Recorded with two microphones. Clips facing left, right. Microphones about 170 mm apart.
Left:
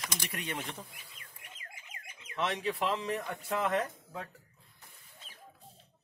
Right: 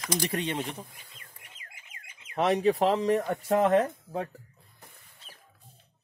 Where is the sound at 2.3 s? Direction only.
40° right (ahead or behind).